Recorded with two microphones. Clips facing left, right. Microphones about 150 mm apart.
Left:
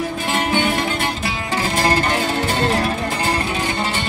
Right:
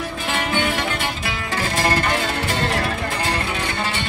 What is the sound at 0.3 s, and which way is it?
Music, 40° left (ahead or behind).